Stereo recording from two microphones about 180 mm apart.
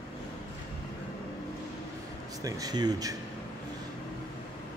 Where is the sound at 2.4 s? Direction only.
20° right (ahead or behind).